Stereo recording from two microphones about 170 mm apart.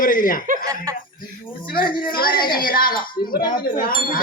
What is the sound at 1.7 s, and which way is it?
A man's voice, 60° left (ahead or behind).